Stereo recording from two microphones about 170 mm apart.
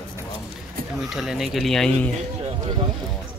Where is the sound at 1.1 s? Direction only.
Centre (ahead or behind).